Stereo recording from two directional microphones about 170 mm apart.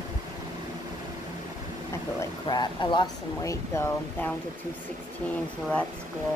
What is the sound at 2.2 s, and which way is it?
Speech, 25° left (ahead or behind).